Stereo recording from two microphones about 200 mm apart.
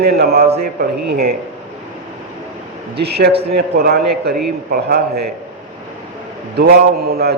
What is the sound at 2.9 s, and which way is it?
A man's voice, 55° right (ahead or behind).